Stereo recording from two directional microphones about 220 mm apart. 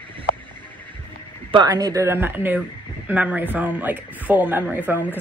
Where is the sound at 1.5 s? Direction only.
20° right (ahead or behind).